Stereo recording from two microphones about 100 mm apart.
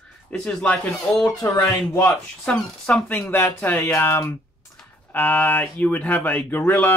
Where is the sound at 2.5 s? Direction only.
10° left (ahead or behind).